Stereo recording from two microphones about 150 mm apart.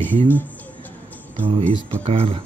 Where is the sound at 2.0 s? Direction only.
40° right (ahead or behind).